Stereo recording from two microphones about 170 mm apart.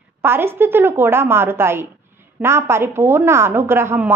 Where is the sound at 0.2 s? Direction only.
15° right (ahead or behind).